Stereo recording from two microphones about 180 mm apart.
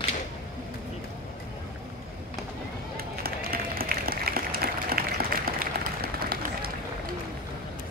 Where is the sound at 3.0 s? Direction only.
55° right (ahead or behind).